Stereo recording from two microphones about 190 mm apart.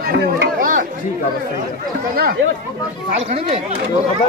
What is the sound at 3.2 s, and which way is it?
Speech, 35° right (ahead or behind).